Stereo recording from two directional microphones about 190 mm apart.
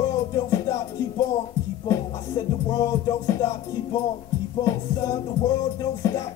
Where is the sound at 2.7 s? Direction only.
15° left (ahead or behind).